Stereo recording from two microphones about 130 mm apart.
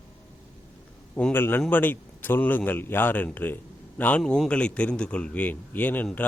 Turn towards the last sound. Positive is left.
turn(degrees=15)  # may be behind; listen again after turning